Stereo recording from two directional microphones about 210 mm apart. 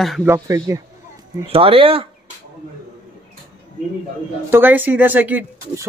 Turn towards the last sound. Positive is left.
turn(degrees=-10)  # may be behind; listen again after turning